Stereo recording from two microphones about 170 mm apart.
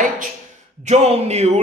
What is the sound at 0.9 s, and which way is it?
Speech, 40° right (ahead or behind).